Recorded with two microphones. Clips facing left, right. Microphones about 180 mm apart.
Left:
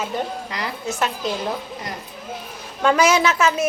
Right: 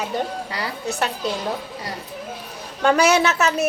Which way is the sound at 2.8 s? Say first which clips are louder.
Even; 40° right (ahead or behind).